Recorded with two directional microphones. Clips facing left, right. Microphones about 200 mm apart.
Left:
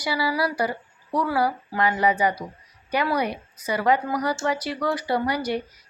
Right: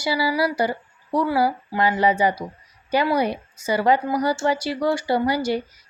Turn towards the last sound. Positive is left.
turn(degrees=-30)  # may be behind; listen again after turning